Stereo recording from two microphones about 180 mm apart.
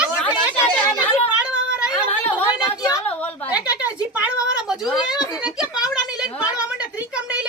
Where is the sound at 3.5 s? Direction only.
5° right (ahead or behind).